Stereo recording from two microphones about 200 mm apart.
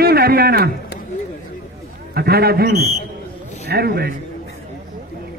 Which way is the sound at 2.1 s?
50° right (ahead or behind).